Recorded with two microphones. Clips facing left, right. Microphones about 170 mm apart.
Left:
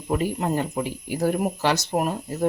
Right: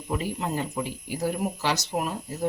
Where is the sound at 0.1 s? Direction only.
55° left (ahead or behind).